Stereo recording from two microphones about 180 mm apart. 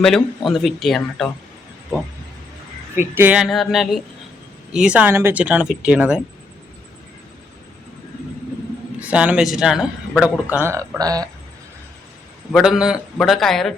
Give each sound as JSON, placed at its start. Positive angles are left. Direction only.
{"t": 0.0, "sound": "a man's voice", "side_deg": 0}
{"t": 2.9, "sound": "a man's voice", "side_deg": -10}
{"t": 9.0, "sound": "speech", "side_deg": -10}
{"t": 10.5, "sound": "speech", "side_deg": -15}
{"t": 12.5, "sound": "a man's voice", "side_deg": 0}